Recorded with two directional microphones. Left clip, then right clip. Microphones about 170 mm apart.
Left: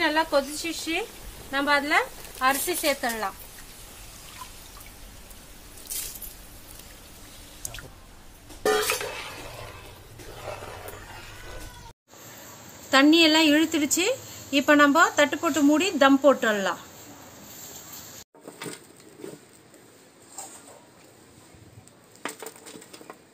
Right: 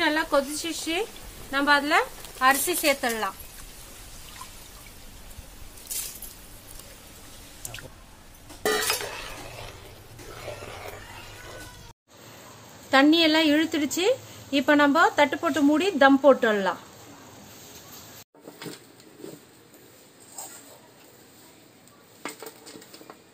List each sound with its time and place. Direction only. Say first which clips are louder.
0.0 s a sound: left 1 dB; 25° right (ahead or behind)
0.6 s speech: right 1 dB; 25° right (ahead or behind)
12.9 s a woman's voice: left 1 dB; 35° right (ahead or behind)